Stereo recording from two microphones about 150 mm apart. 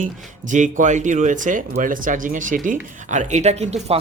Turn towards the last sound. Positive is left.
turn(degrees=-45)  # may be behind; listen again after turning